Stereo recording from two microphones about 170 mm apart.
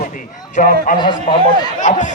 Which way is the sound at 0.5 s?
55° left (ahead or behind).